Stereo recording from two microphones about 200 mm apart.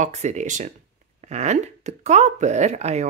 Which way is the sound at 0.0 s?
35° right (ahead or behind).